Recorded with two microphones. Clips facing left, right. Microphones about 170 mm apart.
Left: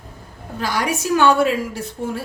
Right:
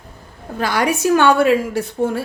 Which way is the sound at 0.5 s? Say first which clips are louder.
Right 4 dB; 60° right (ahead or behind).